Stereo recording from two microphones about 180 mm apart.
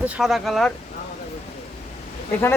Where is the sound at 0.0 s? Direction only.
Centre (ahead or behind).